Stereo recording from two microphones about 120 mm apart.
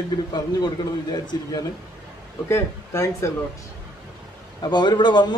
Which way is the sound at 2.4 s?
25° left (ahead or behind).